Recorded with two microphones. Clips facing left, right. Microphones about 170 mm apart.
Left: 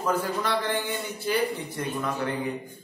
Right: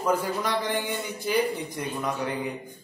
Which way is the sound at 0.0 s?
10° right (ahead or behind).